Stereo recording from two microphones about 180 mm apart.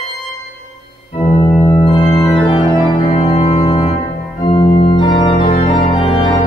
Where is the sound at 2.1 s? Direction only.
25° left (ahead or behind).